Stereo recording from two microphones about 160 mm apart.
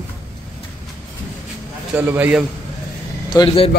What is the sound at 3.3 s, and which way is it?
Speech, 30° left (ahead or behind).